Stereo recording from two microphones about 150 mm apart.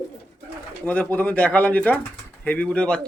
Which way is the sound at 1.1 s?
10° left (ahead or behind).